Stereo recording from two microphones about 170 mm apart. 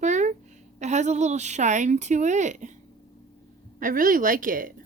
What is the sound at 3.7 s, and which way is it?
Speech, 55° right (ahead or behind).